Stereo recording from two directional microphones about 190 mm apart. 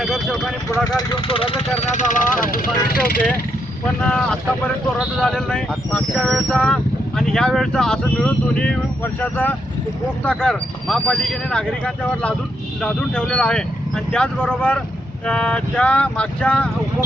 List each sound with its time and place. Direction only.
0.0 s speech: centre (ahead or behind)
0.9 s speech: 30° left (ahead or behind); by 3.2 s 50° left (ahead or behind)
4.0 s speech: 5° left (ahead or behind)
12.8 s speech: 5° left (ahead or behind)